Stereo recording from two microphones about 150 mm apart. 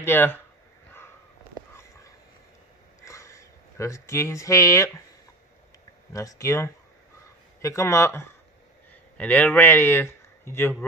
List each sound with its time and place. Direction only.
0.0 s speech: 15° left (ahead or behind)
1.7 s a sound: 20° left (ahead or behind)
3.1 s speech: 20° left (ahead or behind)
6.1 s speech: 20° left (ahead or behind)